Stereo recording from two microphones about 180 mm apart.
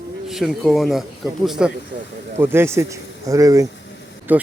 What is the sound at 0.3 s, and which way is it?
A man's voice, centre (ahead or behind).